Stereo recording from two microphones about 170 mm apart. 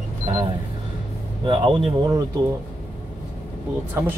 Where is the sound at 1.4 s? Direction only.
30° right (ahead or behind).